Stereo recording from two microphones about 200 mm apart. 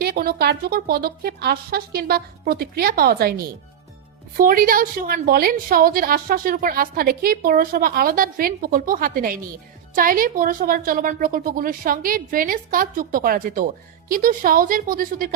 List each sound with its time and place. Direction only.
0.0 s a woman's voice: 50° right (ahead or behind)